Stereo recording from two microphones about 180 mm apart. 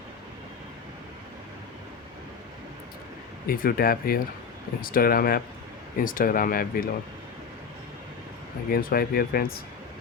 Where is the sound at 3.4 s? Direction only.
55° left (ahead or behind).